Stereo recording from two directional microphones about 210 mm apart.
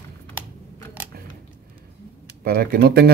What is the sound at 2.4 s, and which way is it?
Speech, 45° right (ahead or behind).